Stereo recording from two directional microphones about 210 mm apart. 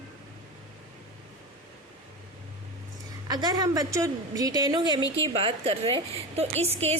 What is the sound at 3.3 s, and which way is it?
A woman's voice, 20° right (ahead or behind).